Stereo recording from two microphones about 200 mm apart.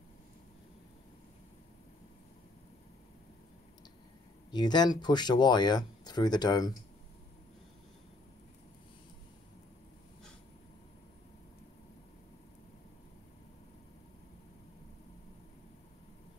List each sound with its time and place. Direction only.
4.5 s speech: 20° left (ahead or behind)